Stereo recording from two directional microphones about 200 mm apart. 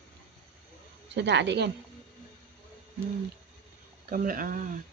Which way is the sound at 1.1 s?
60° right (ahead or behind).